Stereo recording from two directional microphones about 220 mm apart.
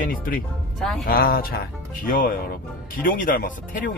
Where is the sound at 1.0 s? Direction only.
45° left (ahead or behind).